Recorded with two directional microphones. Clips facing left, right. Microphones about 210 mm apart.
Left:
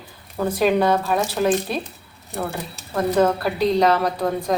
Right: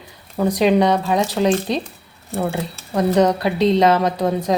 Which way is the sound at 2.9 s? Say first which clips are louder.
Right 3 dB; 15° right (ahead or behind).